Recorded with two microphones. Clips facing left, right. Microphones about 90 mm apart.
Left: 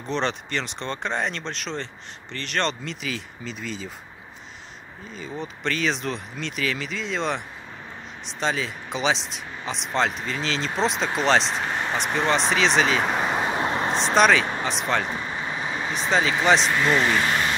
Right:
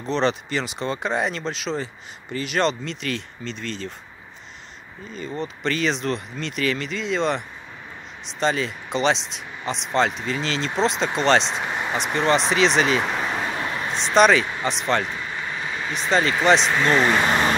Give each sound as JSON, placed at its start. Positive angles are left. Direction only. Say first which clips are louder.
{"t": 0.0, "sound": "speech", "louder": "right 4 dB", "side_deg": 0}
{"t": 5.1, "sound": "speech", "louder": "right 4 dB", "side_deg": 0}
{"t": 13.1, "sound": "vehicle", "louder": "left 2 dB", "side_deg": 15}
{"t": 14.1, "sound": "speech", "louder": "right 3 dB", "side_deg": 0}
{"t": 15.0, "sound": "vehicle", "louder": "left 1 dB", "side_deg": 25}
{"t": 15.9, "sound": "speech", "louder": "right 2 dB", "side_deg": 0}
{"t": 17.3, "sound": "vehicle", "louder": "right 4 dB", "side_deg": -45}